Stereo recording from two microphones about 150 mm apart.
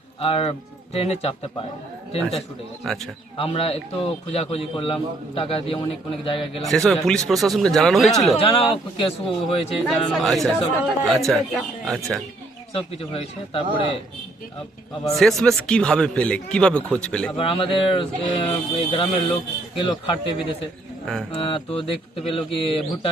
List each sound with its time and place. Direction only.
0.2 s speech: 40° left (ahead or behind)
2.8 s speech: centre (ahead or behind)
3.3 s speech: 40° left (ahead or behind)
6.6 s speech: centre (ahead or behind)
8.4 s speech: 35° left (ahead or behind)
9.8 s speech: centre (ahead or behind)
15.1 s speech: centre (ahead or behind)
17.3 s speech: 40° left (ahead or behind)